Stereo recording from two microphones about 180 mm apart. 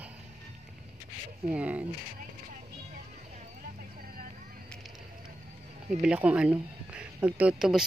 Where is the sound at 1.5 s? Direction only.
10° right (ahead or behind).